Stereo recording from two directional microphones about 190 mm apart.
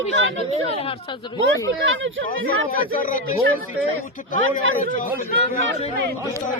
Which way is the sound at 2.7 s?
50° left (ahead or behind).